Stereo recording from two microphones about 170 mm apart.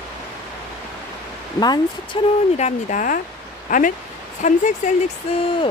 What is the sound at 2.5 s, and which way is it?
Speech, 45° left (ahead or behind).